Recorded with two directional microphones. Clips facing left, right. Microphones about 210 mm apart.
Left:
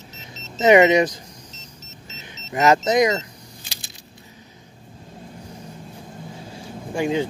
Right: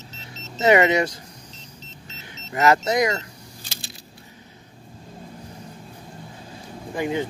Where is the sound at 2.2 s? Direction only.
20° left (ahead or behind).